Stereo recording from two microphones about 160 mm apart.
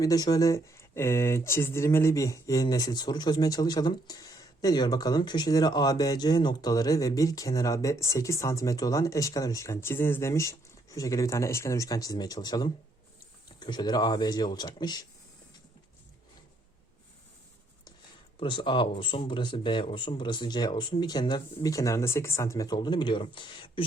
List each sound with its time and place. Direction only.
0.0 s speech: 20° left (ahead or behind)
18.3 s speech: 30° left (ahead or behind)